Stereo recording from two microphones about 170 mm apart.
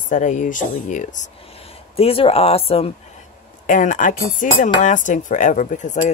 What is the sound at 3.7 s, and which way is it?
Speech, 50° left (ahead or behind).